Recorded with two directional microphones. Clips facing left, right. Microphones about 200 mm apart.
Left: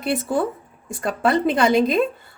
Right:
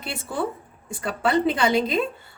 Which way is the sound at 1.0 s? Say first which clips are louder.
Left 2 dB; 45° left (ahead or behind).